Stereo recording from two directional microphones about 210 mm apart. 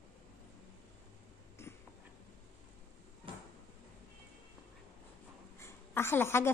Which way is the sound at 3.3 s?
25° right (ahead or behind).